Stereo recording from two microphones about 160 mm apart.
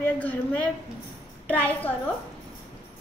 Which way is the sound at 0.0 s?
10° left (ahead or behind).